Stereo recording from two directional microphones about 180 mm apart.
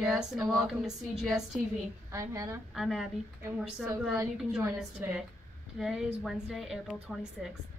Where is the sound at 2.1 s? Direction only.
15° right (ahead or behind).